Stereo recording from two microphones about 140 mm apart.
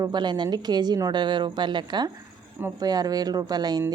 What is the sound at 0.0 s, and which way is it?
A woman's voice, 30° right (ahead or behind).